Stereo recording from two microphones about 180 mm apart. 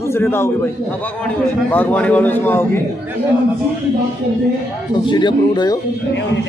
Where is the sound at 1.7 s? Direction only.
10° left (ahead or behind).